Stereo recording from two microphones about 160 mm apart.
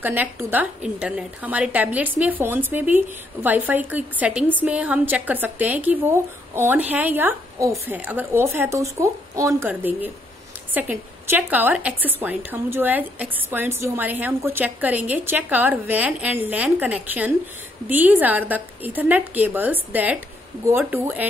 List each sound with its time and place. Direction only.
0.0 s a woman's voice: 10° right (ahead or behind)